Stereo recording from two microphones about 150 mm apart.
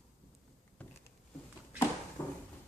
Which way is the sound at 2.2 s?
20° left (ahead or behind).